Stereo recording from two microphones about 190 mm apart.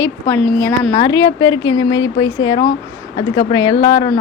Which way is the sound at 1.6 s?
90° left.